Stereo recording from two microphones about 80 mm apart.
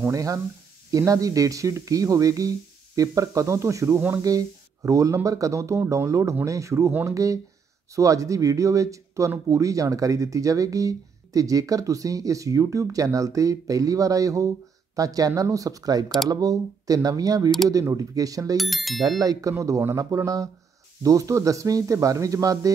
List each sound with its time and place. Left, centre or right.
0.0 s speech: right
18.6 s speech: centre
19.0 s speech: right